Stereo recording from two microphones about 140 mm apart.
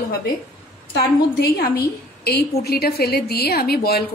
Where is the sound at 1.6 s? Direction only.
90° left.